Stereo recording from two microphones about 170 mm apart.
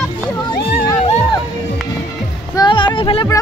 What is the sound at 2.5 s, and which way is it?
Music, 25° left (ahead or behind).